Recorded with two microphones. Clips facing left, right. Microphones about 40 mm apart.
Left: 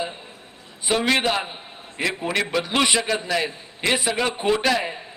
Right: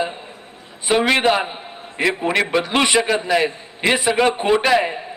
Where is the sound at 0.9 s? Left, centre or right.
Centre.